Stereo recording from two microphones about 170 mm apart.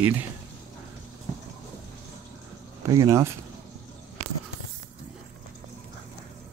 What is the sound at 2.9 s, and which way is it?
Speech, 20° right (ahead or behind).